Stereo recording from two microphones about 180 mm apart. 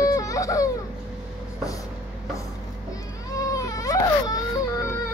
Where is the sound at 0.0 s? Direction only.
20° left (ahead or behind).